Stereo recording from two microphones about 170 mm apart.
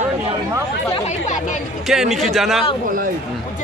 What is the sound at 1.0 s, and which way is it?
Speech, 45° left (ahead or behind).